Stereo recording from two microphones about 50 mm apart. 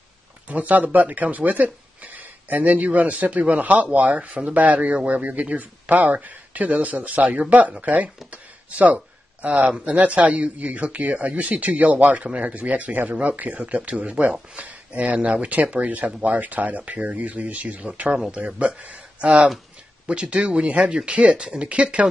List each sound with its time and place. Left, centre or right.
0.5 s speech: right
8.3 s a sound: right
9.8 s speech: right